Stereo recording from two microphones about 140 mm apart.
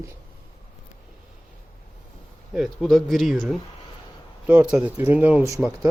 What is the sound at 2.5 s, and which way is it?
Speech, centre (ahead or behind).